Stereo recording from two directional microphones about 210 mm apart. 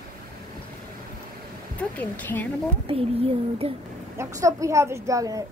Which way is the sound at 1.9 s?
10° left (ahead or behind).